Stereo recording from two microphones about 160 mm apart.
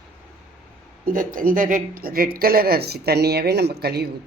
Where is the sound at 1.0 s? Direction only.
60° right (ahead or behind).